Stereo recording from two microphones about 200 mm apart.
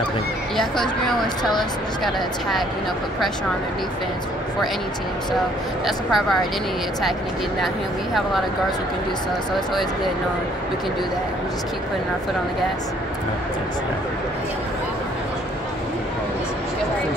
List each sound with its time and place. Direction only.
0.6 s speech: centre (ahead or behind)
1.2 s speech: 20° left (ahead or behind)
5.9 s speech: centre (ahead or behind)